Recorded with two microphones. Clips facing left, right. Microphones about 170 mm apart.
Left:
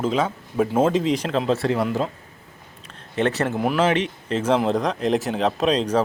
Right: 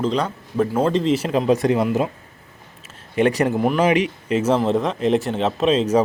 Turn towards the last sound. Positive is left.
turn(degrees=-5)  # may be behind; listen again after turning